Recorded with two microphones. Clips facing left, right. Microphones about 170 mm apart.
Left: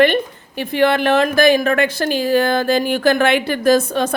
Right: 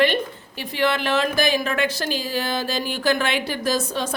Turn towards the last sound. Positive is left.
turn(degrees=55)  # may be behind; listen again after turning